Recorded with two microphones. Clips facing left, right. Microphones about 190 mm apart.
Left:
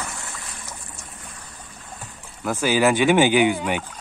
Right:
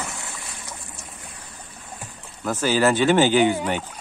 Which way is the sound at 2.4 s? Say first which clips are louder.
Left 1 dB; 10° left (ahead or behind).